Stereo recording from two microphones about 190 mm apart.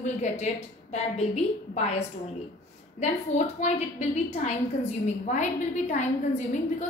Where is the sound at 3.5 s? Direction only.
35° left (ahead or behind).